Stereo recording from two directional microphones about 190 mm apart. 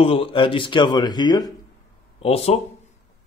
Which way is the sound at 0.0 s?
30° left (ahead or behind).